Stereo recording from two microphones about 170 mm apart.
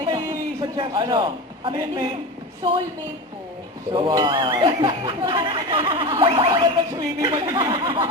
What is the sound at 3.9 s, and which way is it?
Speech, 25° right (ahead or behind).